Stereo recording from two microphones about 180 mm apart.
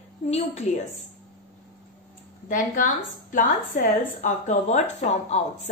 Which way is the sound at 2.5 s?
45° left (ahead or behind).